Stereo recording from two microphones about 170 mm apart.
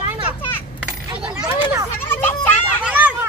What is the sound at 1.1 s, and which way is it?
Speech, 30° right (ahead or behind).